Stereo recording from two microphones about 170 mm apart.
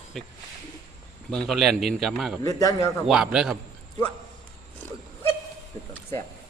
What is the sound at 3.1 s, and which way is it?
Speech, 5° right (ahead or behind).